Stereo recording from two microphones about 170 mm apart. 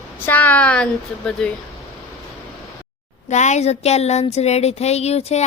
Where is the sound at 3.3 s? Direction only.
45° left (ahead or behind).